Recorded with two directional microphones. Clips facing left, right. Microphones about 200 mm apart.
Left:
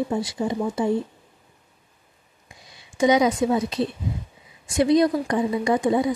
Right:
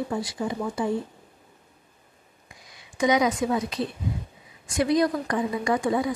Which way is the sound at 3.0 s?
25° left (ahead or behind).